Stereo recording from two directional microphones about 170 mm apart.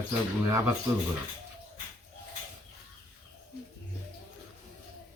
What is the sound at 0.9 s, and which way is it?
Speech, 15° right (ahead or behind).